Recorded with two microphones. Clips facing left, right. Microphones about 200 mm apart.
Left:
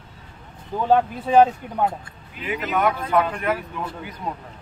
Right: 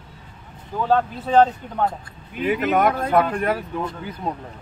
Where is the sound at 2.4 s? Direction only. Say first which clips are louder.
Right 4 dB; 45° right (ahead or behind).